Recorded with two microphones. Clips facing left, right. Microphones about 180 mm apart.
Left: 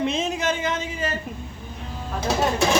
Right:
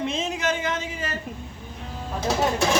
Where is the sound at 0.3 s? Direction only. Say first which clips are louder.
Left 1 dB; 25° left (ahead or behind).